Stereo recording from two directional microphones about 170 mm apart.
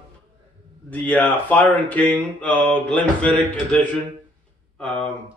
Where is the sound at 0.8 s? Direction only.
10° left (ahead or behind).